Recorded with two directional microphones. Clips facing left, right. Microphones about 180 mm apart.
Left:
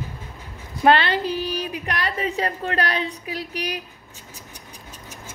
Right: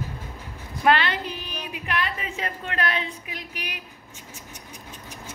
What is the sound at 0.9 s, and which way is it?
A woman's voice, 30° left (ahead or behind).